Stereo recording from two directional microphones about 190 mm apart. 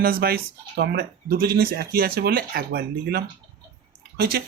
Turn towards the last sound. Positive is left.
turn(degrees=-55)  # may be behind; listen again after turning